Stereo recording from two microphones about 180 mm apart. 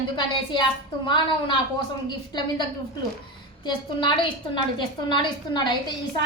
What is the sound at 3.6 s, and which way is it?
A woman's voice, 25° left (ahead or behind).